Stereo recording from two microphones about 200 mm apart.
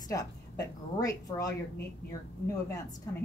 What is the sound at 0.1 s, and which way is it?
Speech, 20° left (ahead or behind).